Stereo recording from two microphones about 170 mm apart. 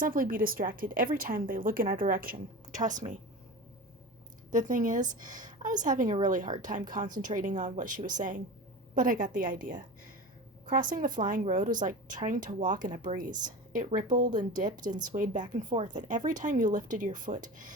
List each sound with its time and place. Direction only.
0.0 s a woman's voice: 55° right (ahead or behind)
4.5 s speech: 50° right (ahead or behind)